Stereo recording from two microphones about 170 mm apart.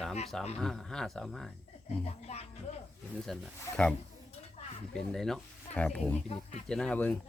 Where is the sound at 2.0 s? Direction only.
35° left (ahead or behind).